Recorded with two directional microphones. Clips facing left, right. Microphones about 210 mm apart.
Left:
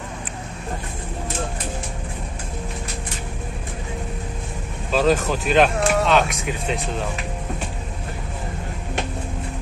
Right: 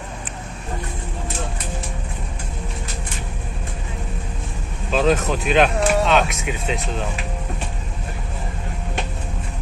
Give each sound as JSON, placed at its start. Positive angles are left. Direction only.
{"t": 4.9, "sound": "speech", "side_deg": 0}